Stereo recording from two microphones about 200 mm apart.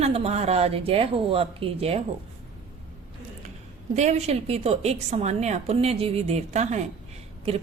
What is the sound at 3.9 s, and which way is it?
A woman's voice, 35° right (ahead or behind).